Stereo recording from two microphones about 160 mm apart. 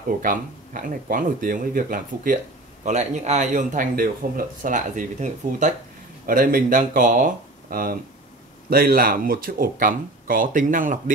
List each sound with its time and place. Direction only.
0.2 s speech: 60° right (ahead or behind)
2.8 s speech: 45° right (ahead or behind)
6.2 s speech: 65° right (ahead or behind)